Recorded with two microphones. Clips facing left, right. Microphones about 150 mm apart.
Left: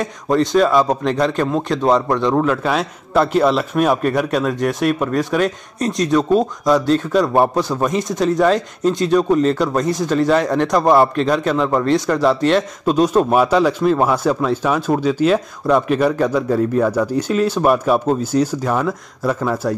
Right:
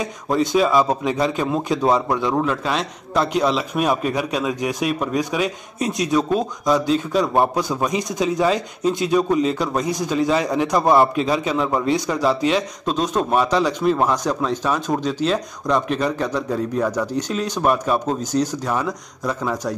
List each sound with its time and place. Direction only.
0.0 s a man's voice: centre (ahead or behind)